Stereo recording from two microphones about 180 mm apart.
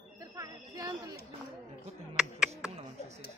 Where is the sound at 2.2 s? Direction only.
5° right (ahead or behind).